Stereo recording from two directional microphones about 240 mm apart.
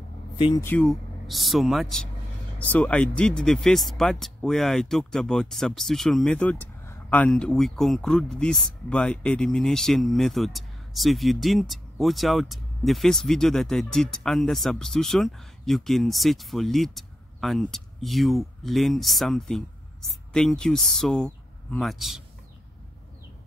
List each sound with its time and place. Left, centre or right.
0.4 s speech: centre
0.7 s speech: centre